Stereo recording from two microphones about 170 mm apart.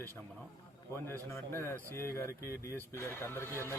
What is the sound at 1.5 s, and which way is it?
Speech, 15° left (ahead or behind).